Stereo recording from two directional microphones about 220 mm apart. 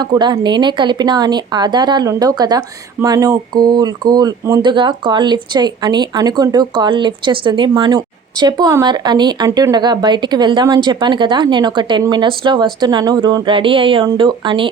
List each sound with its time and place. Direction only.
0.0 s speech: 20° right (ahead or behind)